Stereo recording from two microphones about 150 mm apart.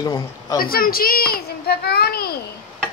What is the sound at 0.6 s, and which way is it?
A child's voice, 80° left.